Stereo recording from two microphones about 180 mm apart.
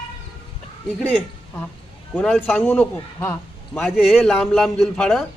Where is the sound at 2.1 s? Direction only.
10° left (ahead or behind).